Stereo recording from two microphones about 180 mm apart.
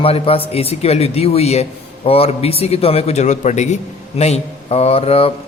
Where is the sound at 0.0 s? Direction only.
30° left (ahead or behind).